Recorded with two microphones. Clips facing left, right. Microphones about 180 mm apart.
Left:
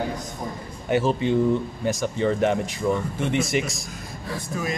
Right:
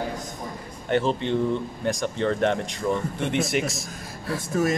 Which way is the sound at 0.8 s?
5° left (ahead or behind).